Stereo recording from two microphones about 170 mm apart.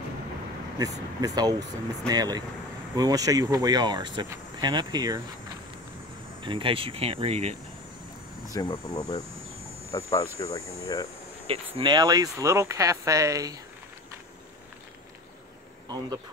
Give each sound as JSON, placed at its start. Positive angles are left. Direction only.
{"t": 0.7, "sound": "speech", "side_deg": -20}
{"t": 6.4, "sound": "speech", "side_deg": -30}
{"t": 8.5, "sound": "speech", "side_deg": 20}
{"t": 11.4, "sound": "speech", "side_deg": -35}